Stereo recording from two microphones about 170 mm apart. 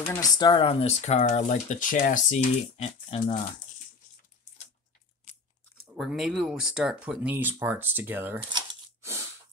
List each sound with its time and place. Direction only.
0.0 s speech: 10° left (ahead or behind)
0.4 s speech: 30° left (ahead or behind)
3.2 s speech: 25° left (ahead or behind)
5.9 s speech: centre (ahead or behind)
8.5 s a sound: 15° right (ahead or behind)